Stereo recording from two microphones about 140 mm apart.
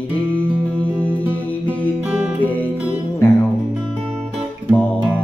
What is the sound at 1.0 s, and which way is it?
Music, 15° right (ahead or behind).